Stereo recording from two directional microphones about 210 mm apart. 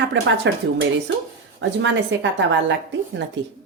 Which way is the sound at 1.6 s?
60° right (ahead or behind).